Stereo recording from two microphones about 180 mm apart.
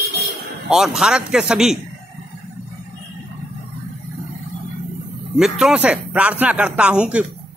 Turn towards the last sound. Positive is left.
turn(degrees=-5)  # may be behind; listen again after turning